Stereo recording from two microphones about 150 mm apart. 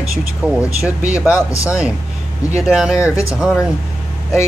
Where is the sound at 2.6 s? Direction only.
5° right (ahead or behind).